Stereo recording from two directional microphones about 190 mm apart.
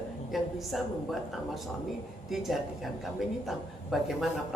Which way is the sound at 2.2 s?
Centre (ahead or behind).